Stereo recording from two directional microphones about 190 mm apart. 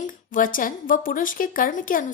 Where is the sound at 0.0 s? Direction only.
45° left (ahead or behind).